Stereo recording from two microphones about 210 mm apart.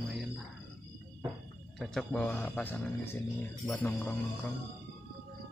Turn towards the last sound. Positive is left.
turn(degrees=5)  # may be behind; listen again after turning